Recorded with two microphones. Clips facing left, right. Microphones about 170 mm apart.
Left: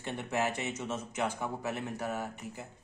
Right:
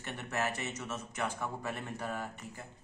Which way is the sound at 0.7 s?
25° left (ahead or behind).